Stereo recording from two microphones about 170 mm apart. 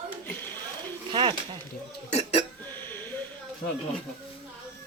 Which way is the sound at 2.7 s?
10° left (ahead or behind).